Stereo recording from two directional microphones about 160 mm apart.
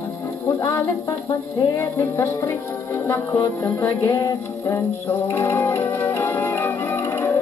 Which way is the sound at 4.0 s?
25° left (ahead or behind).